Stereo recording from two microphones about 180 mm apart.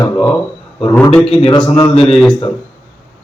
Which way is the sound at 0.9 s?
10° left (ahead or behind).